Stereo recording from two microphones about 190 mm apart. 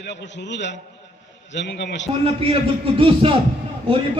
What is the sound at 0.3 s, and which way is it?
A man's voice, 65° left (ahead or behind).